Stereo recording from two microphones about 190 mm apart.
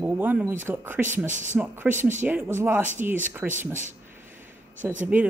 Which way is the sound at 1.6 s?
10° right (ahead or behind).